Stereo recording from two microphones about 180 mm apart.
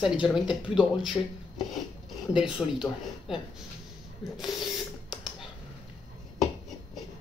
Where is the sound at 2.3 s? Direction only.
Centre (ahead or behind).